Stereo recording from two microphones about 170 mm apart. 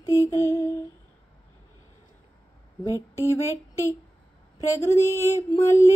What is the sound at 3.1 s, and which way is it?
Speech, 15° left (ahead or behind).